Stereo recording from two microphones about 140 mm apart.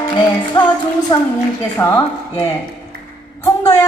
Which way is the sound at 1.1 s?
30° left (ahead or behind).